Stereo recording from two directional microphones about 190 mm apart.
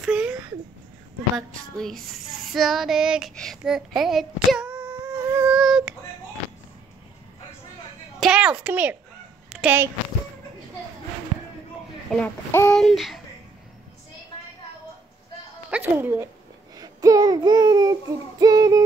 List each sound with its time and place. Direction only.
0.0 s a sound: 5° right (ahead or behind)
1.5 s child singing: centre (ahead or behind)
8.2 s a woman's voice: 5° right (ahead or behind)
9.5 s dog: 10° right (ahead or behind)
12.1 s speech: 10° left (ahead or behind)
15.7 s speech: 10° right (ahead or behind)
16.7 s a sound: 20° right (ahead or behind)